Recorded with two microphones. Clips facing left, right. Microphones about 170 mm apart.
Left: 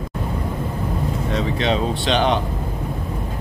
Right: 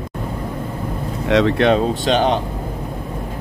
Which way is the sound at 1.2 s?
80° right.